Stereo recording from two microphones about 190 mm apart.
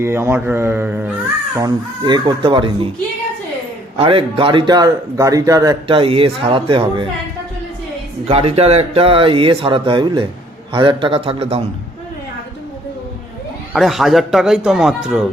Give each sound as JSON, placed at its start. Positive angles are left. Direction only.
{"t": 0.0, "sound": "speech", "side_deg": -15}
{"t": 1.5, "sound": "speech", "side_deg": -20}
{"t": 3.9, "sound": "speech", "side_deg": -30}
{"t": 8.3, "sound": "speech", "side_deg": -30}
{"t": 13.7, "sound": "speech", "side_deg": 0}